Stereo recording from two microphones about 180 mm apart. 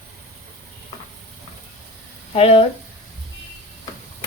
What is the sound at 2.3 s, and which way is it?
Speech, 35° left (ahead or behind).